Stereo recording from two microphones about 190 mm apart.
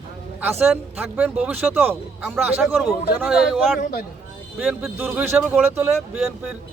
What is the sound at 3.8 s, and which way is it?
Speech, 50° left (ahead or behind).